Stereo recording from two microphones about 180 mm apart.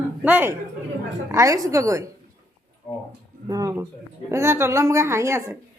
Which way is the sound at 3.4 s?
20° right (ahead or behind).